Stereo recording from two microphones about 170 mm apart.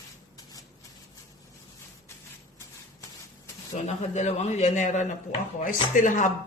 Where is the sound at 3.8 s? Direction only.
45° left (ahead or behind).